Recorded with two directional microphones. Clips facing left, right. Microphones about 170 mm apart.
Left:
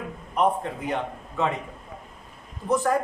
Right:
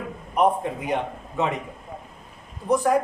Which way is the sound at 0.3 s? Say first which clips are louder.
Right 2 dB; 10° right (ahead or behind).